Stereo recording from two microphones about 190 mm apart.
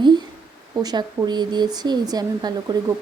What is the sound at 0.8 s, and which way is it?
A woman's voice, 20° right (ahead or behind).